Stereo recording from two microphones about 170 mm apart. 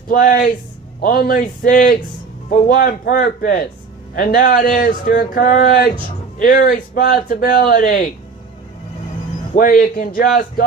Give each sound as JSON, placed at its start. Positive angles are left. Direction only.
{"t": 0.1, "sound": "a man's voice", "side_deg": 55}
{"t": 9.6, "sound": "a man's voice", "side_deg": 55}